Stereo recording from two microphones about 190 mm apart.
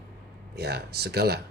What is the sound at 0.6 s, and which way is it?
Speech, 60° right (ahead or behind).